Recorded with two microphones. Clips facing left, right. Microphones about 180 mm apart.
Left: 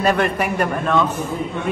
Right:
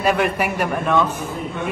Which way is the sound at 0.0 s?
5° right (ahead or behind).